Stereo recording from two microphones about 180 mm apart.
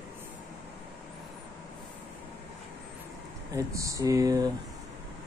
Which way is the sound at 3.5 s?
20° right (ahead or behind).